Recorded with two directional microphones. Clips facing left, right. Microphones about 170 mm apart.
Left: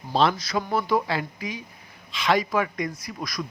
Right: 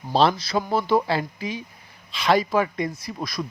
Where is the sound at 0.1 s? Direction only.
30° right (ahead or behind).